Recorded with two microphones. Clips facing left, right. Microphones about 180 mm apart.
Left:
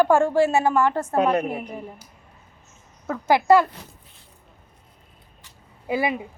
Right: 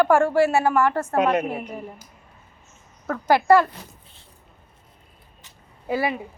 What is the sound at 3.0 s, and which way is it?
Speech, 15° left (ahead or behind).